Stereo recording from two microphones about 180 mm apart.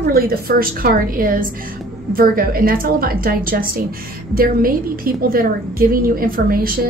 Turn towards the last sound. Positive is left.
turn(degrees=-55)  # may be behind; listen again after turning